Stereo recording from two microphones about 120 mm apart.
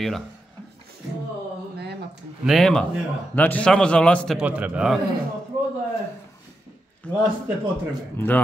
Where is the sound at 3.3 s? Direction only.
15° left (ahead or behind).